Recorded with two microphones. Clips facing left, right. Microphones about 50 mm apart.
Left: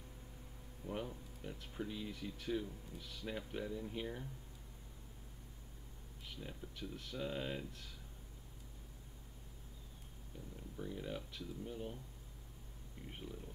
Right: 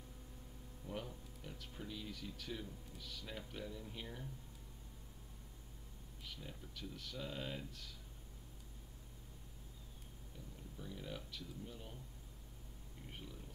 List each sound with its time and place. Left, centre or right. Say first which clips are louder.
0.8 s speech: left 3 dB; left
6.4 s speech: left 5 dB; left
10.8 s speech: left 5 dB; centre
13.1 s speech: left 4 dB; centre